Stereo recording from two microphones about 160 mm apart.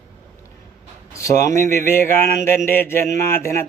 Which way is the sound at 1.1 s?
20° left (ahead or behind).